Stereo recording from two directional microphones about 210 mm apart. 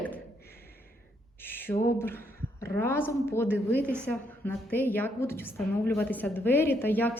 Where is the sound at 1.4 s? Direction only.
10° left (ahead or behind).